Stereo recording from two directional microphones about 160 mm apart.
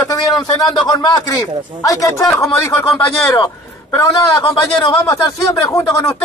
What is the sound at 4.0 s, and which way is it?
Speech, 20° left (ahead or behind).